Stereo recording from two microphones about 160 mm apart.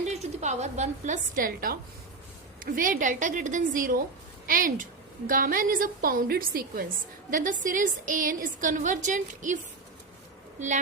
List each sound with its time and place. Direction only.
0.1 s a woman's voice: 45° right (ahead or behind)